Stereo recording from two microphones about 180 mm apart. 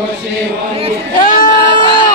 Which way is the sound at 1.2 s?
50° left (ahead or behind).